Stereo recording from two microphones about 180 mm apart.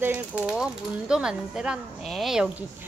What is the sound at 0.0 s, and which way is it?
Speech, 10° right (ahead or behind).